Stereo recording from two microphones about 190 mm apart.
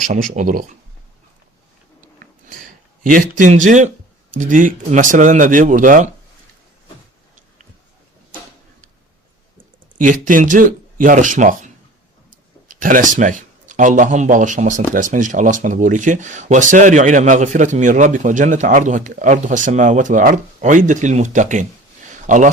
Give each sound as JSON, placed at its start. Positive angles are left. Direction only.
{"t": 0.0, "sound": "speech", "side_deg": -45}
{"t": 2.1, "sound": "a sound", "side_deg": -45}
{"t": 4.4, "sound": "speech", "side_deg": -45}
{"t": 10.0, "sound": "speech", "side_deg": -45}